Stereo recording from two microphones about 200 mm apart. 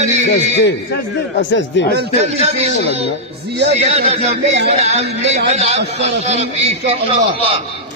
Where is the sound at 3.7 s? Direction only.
30° right (ahead or behind).